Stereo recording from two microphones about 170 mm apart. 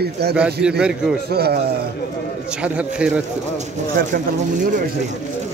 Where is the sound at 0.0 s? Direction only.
70° right (ahead or behind).